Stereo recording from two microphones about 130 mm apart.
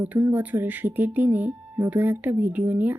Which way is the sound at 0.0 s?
10° right (ahead or behind).